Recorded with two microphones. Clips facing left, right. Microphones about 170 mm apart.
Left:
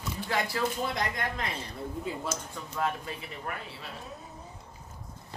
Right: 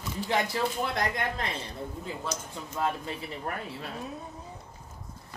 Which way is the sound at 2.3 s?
25° right (ahead or behind).